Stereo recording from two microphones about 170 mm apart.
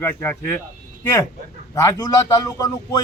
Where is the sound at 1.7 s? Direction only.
20° left (ahead or behind).